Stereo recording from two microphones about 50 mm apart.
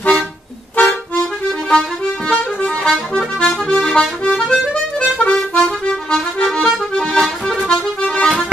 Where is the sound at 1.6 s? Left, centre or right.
Centre.